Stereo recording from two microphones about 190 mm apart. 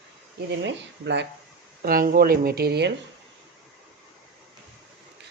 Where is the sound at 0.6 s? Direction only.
70° right (ahead or behind).